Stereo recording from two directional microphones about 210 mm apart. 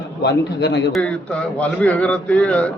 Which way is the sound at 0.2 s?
55° left (ahead or behind).